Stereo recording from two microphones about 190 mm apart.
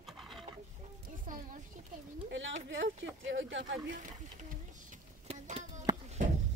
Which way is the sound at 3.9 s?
45° right (ahead or behind).